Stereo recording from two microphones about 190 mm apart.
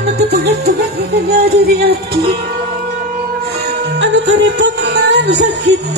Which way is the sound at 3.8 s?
65° right (ahead or behind).